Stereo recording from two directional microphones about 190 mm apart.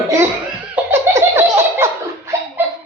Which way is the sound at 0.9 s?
15° right (ahead or behind).